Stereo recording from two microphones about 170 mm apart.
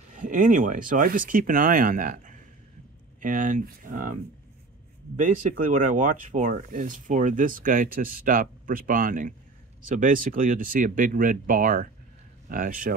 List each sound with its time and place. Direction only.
0.1 s speech: 50° right (ahead or behind)
5.1 s speech: 50° right (ahead or behind)